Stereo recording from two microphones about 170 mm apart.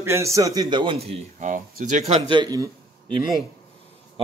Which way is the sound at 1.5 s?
50° right (ahead or behind).